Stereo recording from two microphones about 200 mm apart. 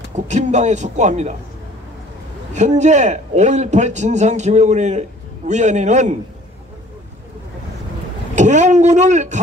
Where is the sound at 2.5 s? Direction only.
35° right (ahead or behind).